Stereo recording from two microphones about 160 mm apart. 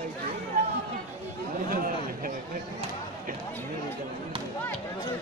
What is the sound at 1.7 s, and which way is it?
Chatter, 65° right (ahead or behind).